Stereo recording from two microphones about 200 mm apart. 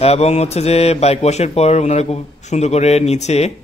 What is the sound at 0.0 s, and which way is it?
Speech, 30° left (ahead or behind).